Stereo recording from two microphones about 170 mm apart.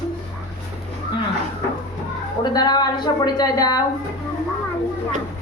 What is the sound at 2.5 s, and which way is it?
A woman's voice, 25° left (ahead or behind).